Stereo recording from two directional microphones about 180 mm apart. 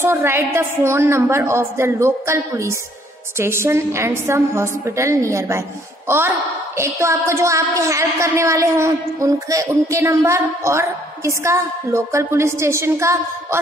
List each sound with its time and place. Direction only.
0.0 s a woman's voice: 15° right (ahead or behind)